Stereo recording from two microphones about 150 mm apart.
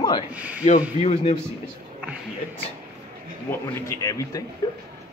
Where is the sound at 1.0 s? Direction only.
40° left (ahead or behind).